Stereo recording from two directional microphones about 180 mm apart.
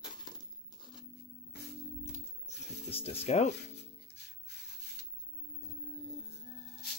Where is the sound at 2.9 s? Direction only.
35° left (ahead or behind).